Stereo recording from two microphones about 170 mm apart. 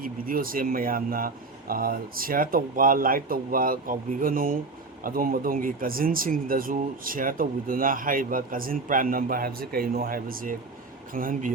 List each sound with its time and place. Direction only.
0.0 s speech: 55° right (ahead or behind)